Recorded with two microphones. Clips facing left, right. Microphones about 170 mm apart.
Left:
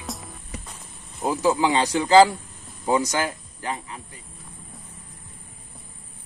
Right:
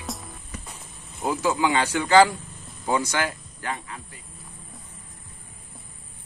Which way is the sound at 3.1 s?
20° left (ahead or behind).